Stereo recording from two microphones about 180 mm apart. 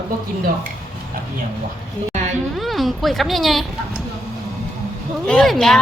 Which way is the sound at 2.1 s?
40° right (ahead or behind).